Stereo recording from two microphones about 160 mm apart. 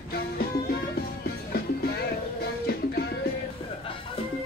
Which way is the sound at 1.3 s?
80° left.